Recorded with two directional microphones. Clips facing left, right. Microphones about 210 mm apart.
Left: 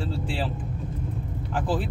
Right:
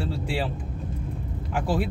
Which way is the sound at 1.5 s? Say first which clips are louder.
Right 1 dB; 10° right (ahead or behind).